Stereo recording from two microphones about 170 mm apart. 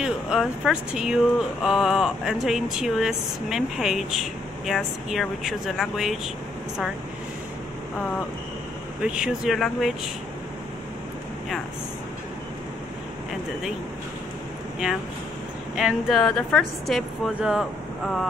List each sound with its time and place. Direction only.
0.0 s speech: 5° right (ahead or behind)
9.0 s speech: 5° right (ahead or behind)
15.7 s speech: centre (ahead or behind)